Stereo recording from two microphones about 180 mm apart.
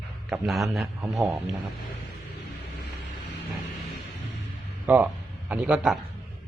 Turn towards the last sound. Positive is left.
turn(degrees=-5)  # may be behind; listen again after turning